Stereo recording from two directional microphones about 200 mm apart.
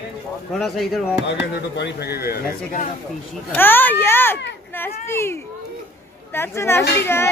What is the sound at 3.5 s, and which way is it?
A child's voice, 10° left (ahead or behind).